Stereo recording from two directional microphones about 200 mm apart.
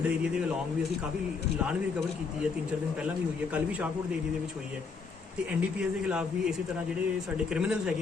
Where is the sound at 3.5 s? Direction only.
5° right (ahead or behind).